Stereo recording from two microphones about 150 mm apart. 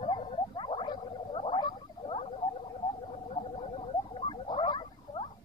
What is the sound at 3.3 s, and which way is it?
Gargling, 35° left (ahead or behind).